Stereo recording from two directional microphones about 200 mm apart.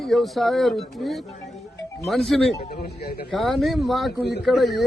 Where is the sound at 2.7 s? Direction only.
50° left (ahead or behind).